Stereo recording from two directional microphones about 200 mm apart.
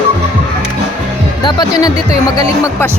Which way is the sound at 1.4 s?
20° left (ahead or behind).